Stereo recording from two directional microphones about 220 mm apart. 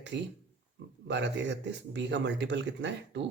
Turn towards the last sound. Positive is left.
turn(degrees=-55)  # may be behind; listen again after turning